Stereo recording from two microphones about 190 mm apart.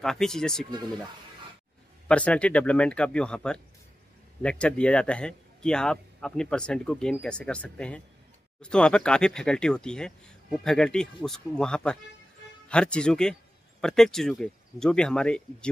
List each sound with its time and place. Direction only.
0.0 s speech: centre (ahead or behind)
2.0 s speech: 5° left (ahead or behind)